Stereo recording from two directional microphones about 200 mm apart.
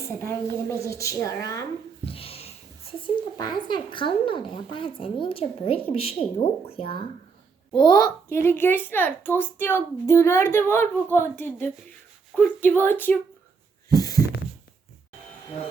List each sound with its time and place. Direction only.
0.0 s a woman's voice: 10° left (ahead or behind)
2.0 s a sound: 30° left (ahead or behind)
3.3 s a woman's voice: 20° left (ahead or behind)
13.9 s heart sounds: 20° left (ahead or behind)